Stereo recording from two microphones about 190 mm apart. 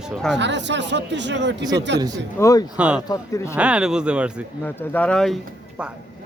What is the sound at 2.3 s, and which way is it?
Speech, 15° left (ahead or behind).